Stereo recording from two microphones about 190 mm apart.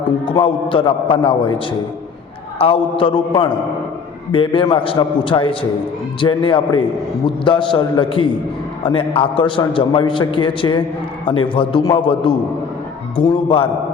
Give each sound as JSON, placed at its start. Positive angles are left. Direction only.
{"t": 0.4, "sound": "a man's voice", "side_deg": 25}
{"t": 2.6, "sound": "a man's voice", "side_deg": 30}